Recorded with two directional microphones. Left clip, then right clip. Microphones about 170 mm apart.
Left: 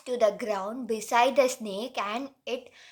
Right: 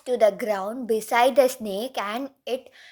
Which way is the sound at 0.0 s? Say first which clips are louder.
Right 5 dB; 30° right (ahead or behind).